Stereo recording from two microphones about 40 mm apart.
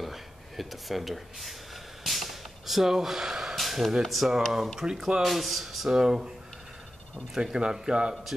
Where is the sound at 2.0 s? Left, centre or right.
Centre.